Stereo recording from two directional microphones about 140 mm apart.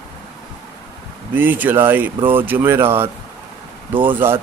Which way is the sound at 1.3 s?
15° right (ahead or behind).